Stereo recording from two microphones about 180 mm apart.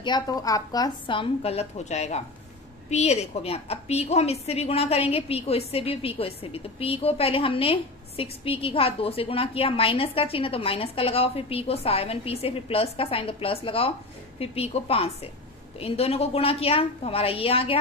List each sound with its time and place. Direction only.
0.0 s a woman's voice: 20° left (ahead or behind)